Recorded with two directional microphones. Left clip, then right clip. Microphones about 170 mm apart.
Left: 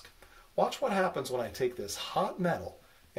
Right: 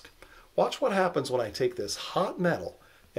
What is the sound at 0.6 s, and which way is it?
Speech, 35° right (ahead or behind).